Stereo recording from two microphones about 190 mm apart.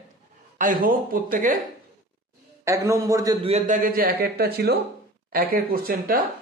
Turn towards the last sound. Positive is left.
turn(degrees=-50)  # may be behind; listen again after turning